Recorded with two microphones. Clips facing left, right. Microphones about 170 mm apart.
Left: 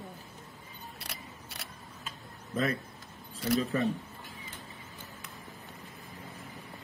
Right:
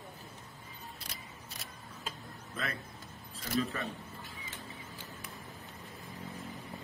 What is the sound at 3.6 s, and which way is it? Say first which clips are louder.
Speech: left 6 dB; 40° left (ahead or behind).